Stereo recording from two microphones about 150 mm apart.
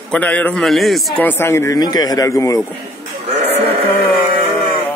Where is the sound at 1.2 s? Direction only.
15° left (ahead or behind).